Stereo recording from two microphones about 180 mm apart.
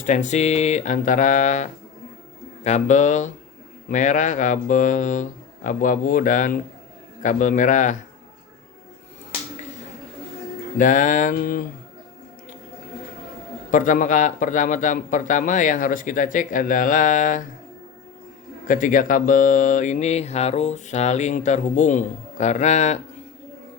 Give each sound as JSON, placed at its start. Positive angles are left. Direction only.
{"t": 0.0, "sound": "a man's voice", "side_deg": 40}
{"t": 10.8, "sound": "a man's voice", "side_deg": 45}
{"t": 13.7, "sound": "a man's voice", "side_deg": 45}
{"t": 18.7, "sound": "speech", "side_deg": 45}